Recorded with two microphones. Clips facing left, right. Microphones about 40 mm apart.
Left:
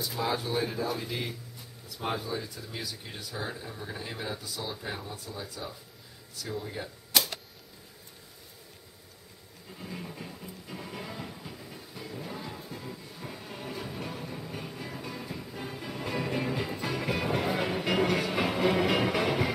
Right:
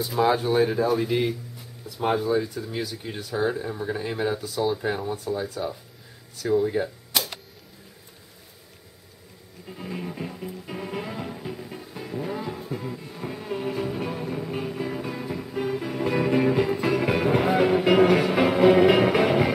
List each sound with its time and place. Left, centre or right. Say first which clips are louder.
0.3 s speech: right 8 dB; right; by 3.3 s centre
3.3 s speech: right 12 dB; right
4.4 s speech: right 12 dB; centre
4.8 s speech: right 11 dB; right
9.7 s music: right 7 dB; right